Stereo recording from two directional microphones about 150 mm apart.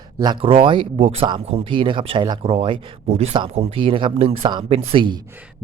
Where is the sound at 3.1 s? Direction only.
45° right (ahead or behind).